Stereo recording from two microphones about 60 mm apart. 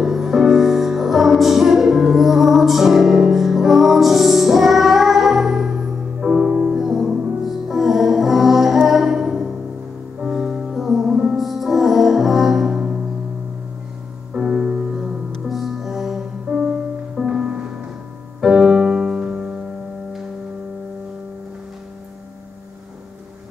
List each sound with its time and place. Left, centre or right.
0.0 s music: centre
14.3 s music: centre
16.4 s music: centre